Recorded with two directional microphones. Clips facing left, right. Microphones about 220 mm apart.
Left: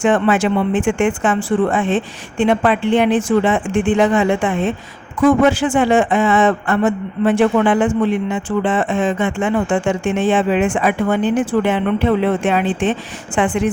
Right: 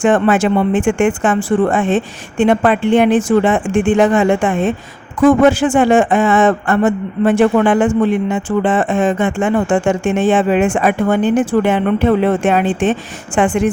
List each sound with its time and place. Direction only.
0.0 s speech: 45° right (ahead or behind)